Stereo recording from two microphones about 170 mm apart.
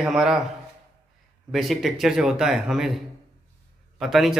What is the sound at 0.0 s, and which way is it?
Speech, 5° right (ahead or behind).